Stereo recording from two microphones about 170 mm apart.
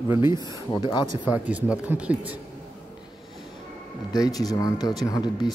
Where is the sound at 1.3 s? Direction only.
10° right (ahead or behind).